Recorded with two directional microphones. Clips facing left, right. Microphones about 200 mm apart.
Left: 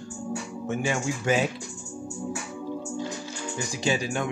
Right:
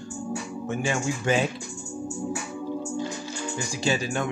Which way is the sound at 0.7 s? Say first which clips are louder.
Even; 15° left (ahead or behind).